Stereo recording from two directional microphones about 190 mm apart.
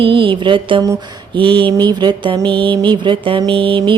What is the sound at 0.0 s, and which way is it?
Mantra, 25° right (ahead or behind).